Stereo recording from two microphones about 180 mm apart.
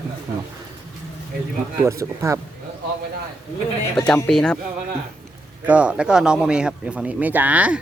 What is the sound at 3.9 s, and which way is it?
Speech, 5° left (ahead or behind).